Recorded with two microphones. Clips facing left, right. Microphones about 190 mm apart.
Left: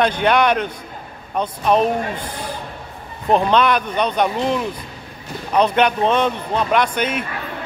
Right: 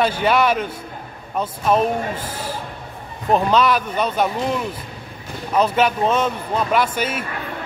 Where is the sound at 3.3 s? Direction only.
5° right (ahead or behind).